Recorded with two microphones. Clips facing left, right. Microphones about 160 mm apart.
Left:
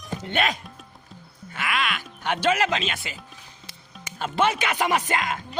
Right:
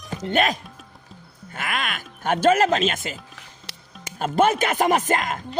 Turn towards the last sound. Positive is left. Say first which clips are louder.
# right 3 dB
turn(degrees=-45)  # may be behind; listen again after turning